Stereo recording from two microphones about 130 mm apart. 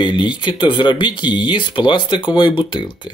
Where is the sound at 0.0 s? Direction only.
40° left (ahead or behind).